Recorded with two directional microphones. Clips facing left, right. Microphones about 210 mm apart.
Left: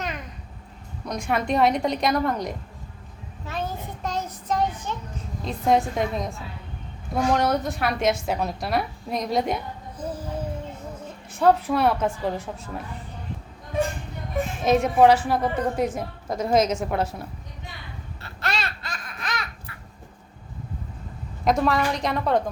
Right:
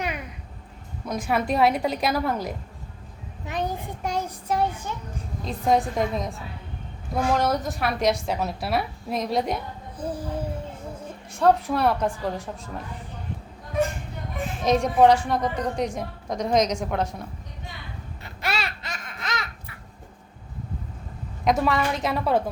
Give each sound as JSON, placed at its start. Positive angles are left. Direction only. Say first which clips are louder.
{"t": 0.0, "sound": "a sound", "louder": "right 2 dB", "side_deg": -10}
{"t": 1.0, "sound": "a woman's voice", "louder": "right 1 dB", "side_deg": -5}
{"t": 3.4, "sound": "a child's voice", "louder": "right 2 dB", "side_deg": -15}
{"t": 5.5, "sound": "a woman's voice", "louder": "left 1 dB", "side_deg": 0}
{"t": 10.0, "sound": "music", "louder": "right 2 dB", "side_deg": -10}
{"t": 11.3, "sound": "a woman's voice", "louder": "left 1 dB", "side_deg": 0}
{"t": 14.6, "sound": "a woman's voice", "louder": "left 1 dB", "side_deg": 5}
{"t": 18.2, "sound": "babbling", "louder": "even", "side_deg": -10}
{"t": 18.8, "sound": "laughter", "louder": "even", "side_deg": -20}
{"t": 21.4, "sound": "a woman's voice", "louder": "left 1 dB", "side_deg": 0}